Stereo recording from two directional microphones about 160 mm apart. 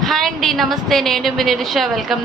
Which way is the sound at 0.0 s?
Centre (ahead or behind).